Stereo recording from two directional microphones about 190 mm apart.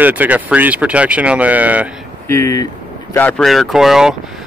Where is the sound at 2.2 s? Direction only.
15° left (ahead or behind).